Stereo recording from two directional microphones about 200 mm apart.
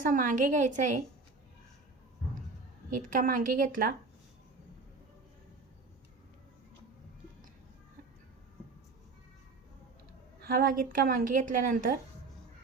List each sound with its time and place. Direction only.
0.0 s a woman's voice: 40° right (ahead or behind)
2.9 s a woman's voice: 40° right (ahead or behind)
10.4 s a woman's voice: 45° right (ahead or behind)